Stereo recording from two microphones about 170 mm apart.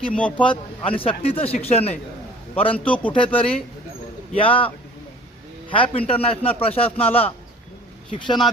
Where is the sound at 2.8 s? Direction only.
10° left (ahead or behind).